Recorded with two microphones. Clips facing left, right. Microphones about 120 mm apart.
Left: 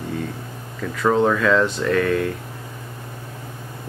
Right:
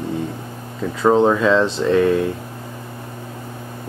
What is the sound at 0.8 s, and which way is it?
Speech, 20° right (ahead or behind).